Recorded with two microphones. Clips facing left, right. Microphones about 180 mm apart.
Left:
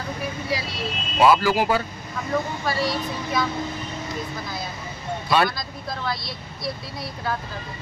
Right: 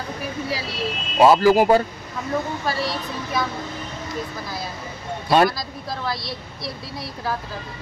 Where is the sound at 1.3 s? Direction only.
45° right (ahead or behind).